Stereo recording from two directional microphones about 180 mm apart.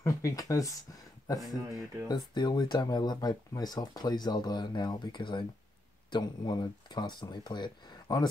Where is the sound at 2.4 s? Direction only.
25° left (ahead or behind).